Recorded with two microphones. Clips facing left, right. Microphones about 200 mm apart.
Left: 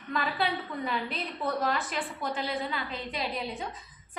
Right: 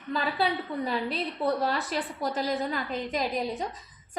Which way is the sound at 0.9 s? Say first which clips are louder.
Right 3 dB; 35° right (ahead or behind).